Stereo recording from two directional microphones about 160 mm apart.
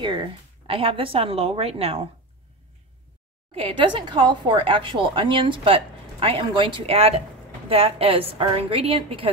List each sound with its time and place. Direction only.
0.0 s a woman's voice: 30° right (ahead or behind)
3.5 s a woman's voice: 35° right (ahead or behind)